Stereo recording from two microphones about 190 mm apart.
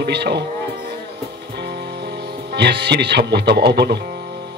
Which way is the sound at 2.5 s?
60° right (ahead or behind).